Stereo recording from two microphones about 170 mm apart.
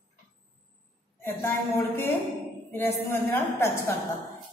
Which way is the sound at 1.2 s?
15° left (ahead or behind).